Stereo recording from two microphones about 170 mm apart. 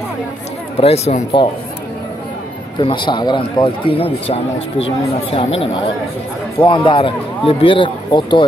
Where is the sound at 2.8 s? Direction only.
30° left (ahead or behind).